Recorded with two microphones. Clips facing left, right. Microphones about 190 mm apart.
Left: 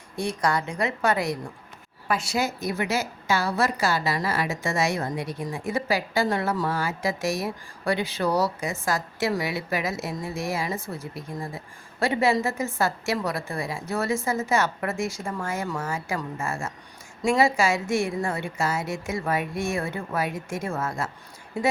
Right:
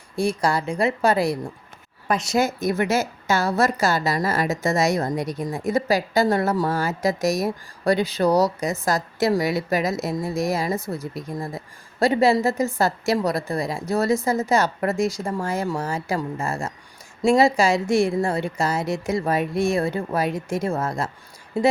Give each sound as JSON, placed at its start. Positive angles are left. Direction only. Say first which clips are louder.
{"t": 0.7, "sound": "a woman's voice", "louder": "right 5 dB", "side_deg": -30}
{"t": 2.0, "sound": "a woman's voice", "louder": "right 5 dB", "side_deg": -45}